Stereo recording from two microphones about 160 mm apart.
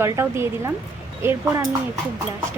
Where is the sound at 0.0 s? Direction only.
15° right (ahead or behind).